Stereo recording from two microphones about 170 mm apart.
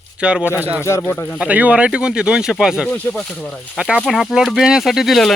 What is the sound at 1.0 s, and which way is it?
Speech, 10° left (ahead or behind).